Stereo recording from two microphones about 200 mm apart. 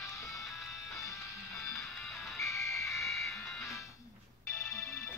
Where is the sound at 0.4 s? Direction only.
Centre (ahead or behind).